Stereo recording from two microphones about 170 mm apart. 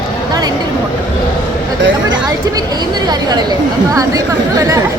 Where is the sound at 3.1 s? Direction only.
25° right (ahead or behind).